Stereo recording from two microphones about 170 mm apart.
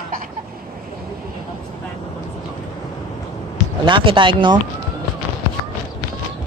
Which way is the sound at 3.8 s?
30° right (ahead or behind).